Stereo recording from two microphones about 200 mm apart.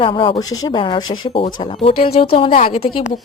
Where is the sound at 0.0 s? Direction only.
25° left (ahead or behind).